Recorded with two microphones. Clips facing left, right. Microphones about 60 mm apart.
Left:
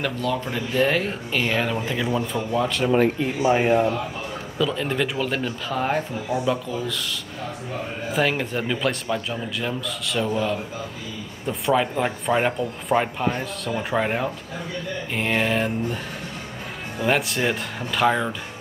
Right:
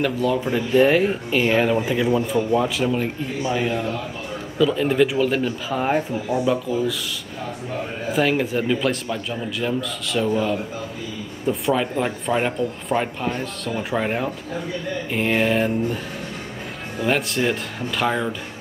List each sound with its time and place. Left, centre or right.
0.0 s speech: centre
3.4 s speech: left
4.6 s speech: centre
8.1 s speech: centre
17.0 s speech: centre